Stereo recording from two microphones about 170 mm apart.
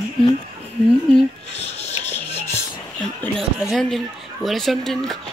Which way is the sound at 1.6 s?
40° left (ahead or behind).